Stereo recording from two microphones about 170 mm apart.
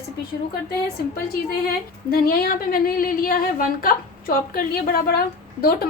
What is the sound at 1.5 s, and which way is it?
Speech, 60° left (ahead or behind).